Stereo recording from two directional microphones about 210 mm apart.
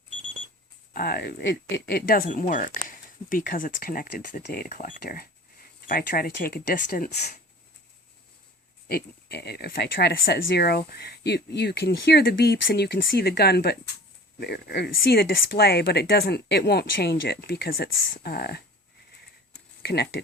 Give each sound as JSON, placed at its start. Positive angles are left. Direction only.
{"t": 0.9, "sound": "speech", "side_deg": 45}
{"t": 8.9, "sound": "speech", "side_deg": 50}
{"t": 19.8, "sound": "speech", "side_deg": 50}